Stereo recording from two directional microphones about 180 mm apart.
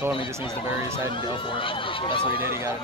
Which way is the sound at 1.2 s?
30° left (ahead or behind).